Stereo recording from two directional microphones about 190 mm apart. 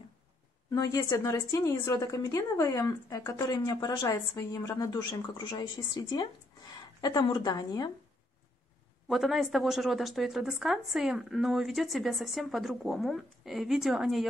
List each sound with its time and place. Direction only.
0.7 s a woman's voice: 20° left (ahead or behind)
9.0 s a woman's voice: centre (ahead or behind)